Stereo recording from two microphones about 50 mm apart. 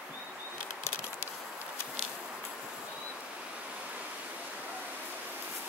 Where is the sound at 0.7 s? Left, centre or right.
Left.